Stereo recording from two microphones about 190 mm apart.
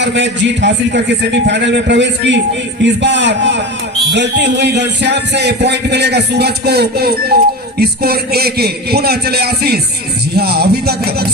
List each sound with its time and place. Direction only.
0.0 s a man's voice: 70° right (ahead or behind)